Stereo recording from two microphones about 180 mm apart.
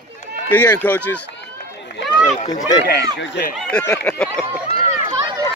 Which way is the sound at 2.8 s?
70° left (ahead or behind).